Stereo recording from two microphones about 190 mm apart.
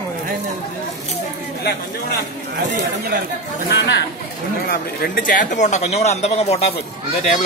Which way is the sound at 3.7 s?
65° left (ahead or behind).